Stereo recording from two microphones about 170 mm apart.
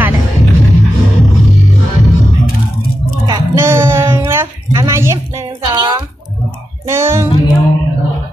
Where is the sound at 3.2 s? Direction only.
20° right (ahead or behind).